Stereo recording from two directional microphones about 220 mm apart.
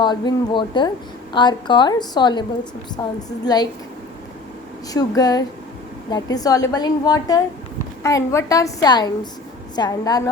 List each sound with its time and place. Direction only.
0.0 s a woman's voice: 20° left (ahead or behind)
4.9 s a woman's voice: 15° left (ahead or behind)